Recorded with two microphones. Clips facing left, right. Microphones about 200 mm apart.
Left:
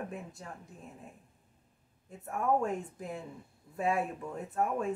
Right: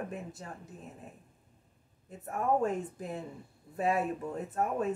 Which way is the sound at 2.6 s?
Centre (ahead or behind).